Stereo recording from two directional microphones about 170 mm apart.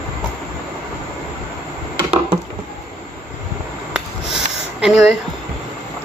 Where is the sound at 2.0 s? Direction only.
35° right (ahead or behind).